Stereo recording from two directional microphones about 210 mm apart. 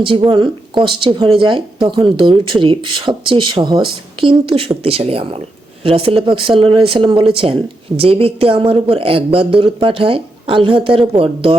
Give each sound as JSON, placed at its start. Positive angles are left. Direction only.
{"t": 0.3, "sound": "speech", "side_deg": -20}